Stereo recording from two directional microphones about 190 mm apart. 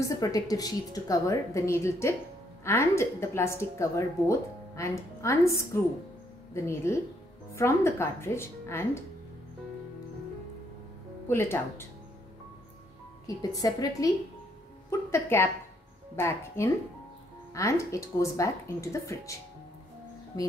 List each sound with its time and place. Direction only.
0.0 s a woman's voice: 20° left (ahead or behind)
11.2 s a woman's voice: 15° left (ahead or behind)
13.4 s a woman's voice: 20° left (ahead or behind)